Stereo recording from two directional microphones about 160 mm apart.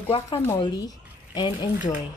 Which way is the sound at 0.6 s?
25° left (ahead or behind).